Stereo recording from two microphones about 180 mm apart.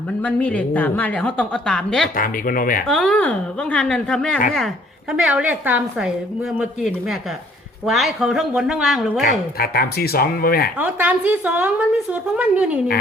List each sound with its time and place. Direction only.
0.2 s a woman's voice: 10° left (ahead or behind)
2.1 s speech: 50° left (ahead or behind)
2.8 s a woman's voice: 5° left (ahead or behind)
5.1 s a woman's voice: 5° right (ahead or behind)
9.2 s speech: 55° left (ahead or behind)
10.8 s a woman's voice: 10° right (ahead or behind)